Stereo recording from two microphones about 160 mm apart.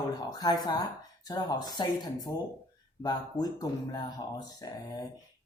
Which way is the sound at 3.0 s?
25° left (ahead or behind).